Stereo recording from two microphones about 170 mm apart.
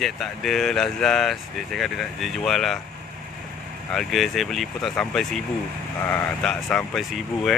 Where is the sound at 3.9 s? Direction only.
Centre (ahead or behind).